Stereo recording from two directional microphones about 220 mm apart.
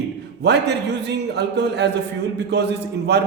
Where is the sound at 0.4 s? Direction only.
50° right (ahead or behind).